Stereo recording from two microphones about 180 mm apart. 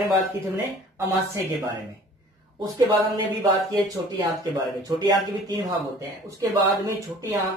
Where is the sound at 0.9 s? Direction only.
15° right (ahead or behind).